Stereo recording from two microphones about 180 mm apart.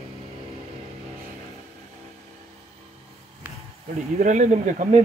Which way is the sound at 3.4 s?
10° right (ahead or behind).